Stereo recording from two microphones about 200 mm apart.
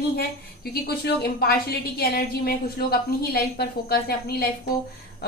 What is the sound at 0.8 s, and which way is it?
A woman's voice, 50° left (ahead or behind).